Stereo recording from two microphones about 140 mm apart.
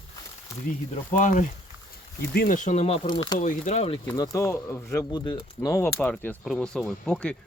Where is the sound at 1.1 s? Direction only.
70° left (ahead or behind).